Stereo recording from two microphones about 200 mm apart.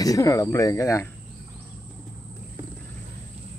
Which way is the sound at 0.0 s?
15° left (ahead or behind).